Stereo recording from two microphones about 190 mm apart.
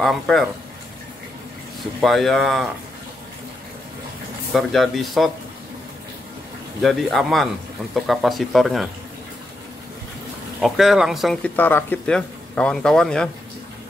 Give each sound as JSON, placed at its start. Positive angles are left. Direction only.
{"t": 0.0, "sound": "speech", "side_deg": 0}
{"t": 2.0, "sound": "speech", "side_deg": 0}
{"t": 4.6, "sound": "speech", "side_deg": 0}
{"t": 6.8, "sound": "speech", "side_deg": 0}
{"t": 10.6, "sound": "speech", "side_deg": 0}
{"t": 11.5, "sound": "speech", "side_deg": 10}